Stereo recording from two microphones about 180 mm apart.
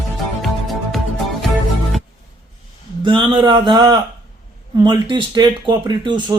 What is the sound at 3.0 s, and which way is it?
Speech, 25° right (ahead or behind).